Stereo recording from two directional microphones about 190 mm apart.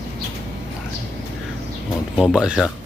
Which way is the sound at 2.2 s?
5° right (ahead or behind).